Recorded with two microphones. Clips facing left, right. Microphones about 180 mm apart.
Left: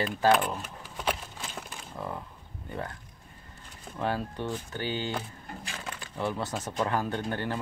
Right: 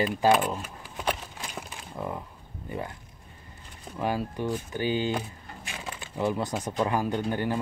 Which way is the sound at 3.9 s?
10° right (ahead or behind).